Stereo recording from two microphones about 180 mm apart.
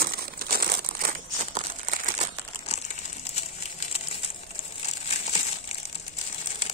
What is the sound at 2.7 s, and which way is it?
Crumpling, 40° left (ahead or behind).